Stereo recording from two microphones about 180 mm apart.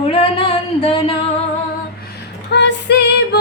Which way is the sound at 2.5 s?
70° left (ahead or behind).